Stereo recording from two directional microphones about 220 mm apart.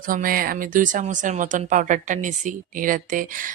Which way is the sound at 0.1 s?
40° right (ahead or behind).